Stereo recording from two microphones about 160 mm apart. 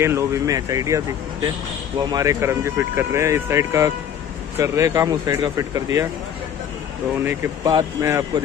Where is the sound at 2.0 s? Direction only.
20° right (ahead or behind).